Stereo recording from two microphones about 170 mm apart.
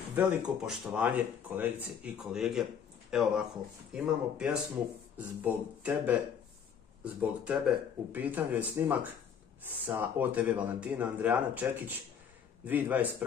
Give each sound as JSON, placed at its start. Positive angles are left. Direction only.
{"t": 0.1, "sound": "speech", "side_deg": -5}